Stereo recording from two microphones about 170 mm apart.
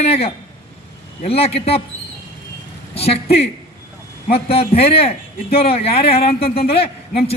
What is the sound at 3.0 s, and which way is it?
Speech, 35° left (ahead or behind).